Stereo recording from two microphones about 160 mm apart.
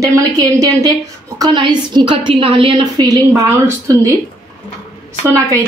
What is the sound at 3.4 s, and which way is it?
Speech, 15° right (ahead or behind).